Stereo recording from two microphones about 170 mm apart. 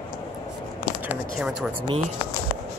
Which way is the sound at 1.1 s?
5° right (ahead or behind).